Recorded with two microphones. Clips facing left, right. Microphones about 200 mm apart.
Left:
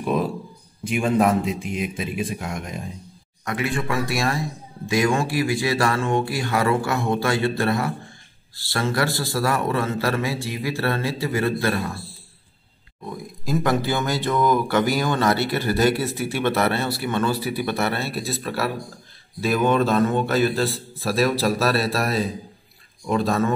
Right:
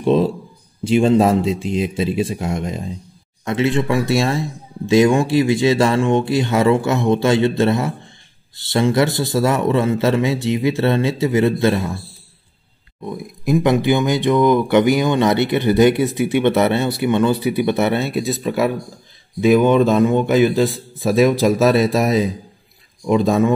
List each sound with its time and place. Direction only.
0.0 s a sound: 25° right (ahead or behind)
0.8 s speech: 30° right (ahead or behind)
13.0 s speech: 20° right (ahead or behind)